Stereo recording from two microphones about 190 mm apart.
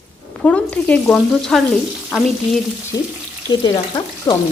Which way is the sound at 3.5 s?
25° left (ahead or behind).